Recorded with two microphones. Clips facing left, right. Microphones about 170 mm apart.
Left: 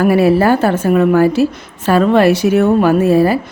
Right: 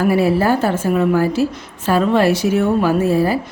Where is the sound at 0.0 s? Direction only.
65° left (ahead or behind).